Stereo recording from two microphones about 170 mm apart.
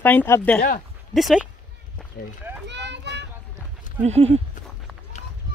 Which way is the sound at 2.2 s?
60° left (ahead or behind).